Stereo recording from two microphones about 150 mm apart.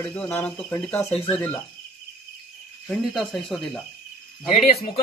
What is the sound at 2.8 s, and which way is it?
Speech, centre (ahead or behind).